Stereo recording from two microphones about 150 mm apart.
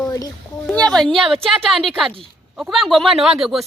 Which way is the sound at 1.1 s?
40° right (ahead or behind).